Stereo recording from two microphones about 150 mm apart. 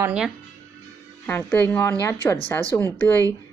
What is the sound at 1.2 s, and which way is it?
Speech, 10° left (ahead or behind).